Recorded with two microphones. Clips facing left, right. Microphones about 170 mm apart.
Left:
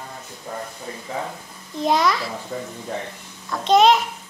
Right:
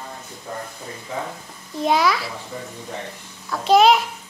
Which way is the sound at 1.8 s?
5° right (ahead or behind).